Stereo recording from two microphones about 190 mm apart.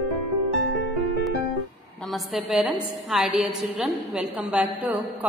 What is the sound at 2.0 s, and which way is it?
A woman's voice, centre (ahead or behind).